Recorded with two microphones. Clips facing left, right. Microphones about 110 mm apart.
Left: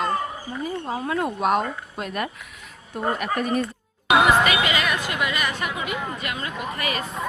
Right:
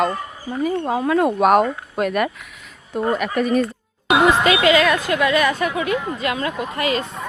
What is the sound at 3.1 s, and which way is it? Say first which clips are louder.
Speech: right 6 dB; 90° right.